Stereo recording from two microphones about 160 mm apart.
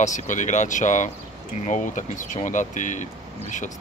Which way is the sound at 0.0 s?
50° left (ahead or behind).